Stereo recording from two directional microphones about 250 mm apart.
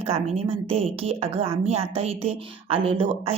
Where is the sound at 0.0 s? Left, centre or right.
Right.